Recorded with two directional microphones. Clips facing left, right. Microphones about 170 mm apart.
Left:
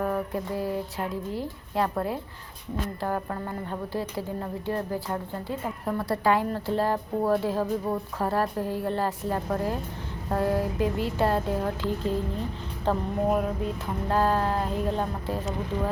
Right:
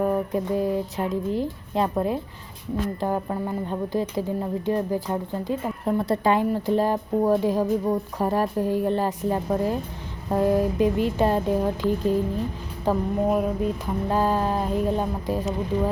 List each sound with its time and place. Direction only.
0.0 s speech: 20° right (ahead or behind)